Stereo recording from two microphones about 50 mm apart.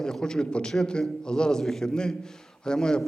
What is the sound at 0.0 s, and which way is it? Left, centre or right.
A man's voice, centre.